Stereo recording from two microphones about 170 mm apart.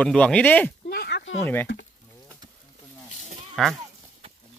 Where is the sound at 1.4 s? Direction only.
10° left (ahead or behind).